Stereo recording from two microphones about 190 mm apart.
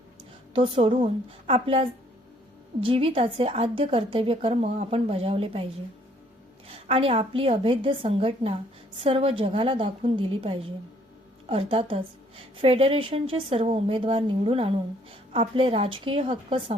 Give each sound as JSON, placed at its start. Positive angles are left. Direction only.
{"t": 0.5, "sound": "a woman's voice", "side_deg": -30}
{"t": 6.7, "sound": "a woman's voice", "side_deg": -30}